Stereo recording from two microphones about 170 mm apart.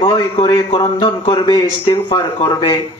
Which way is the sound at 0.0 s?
30° left (ahead or behind).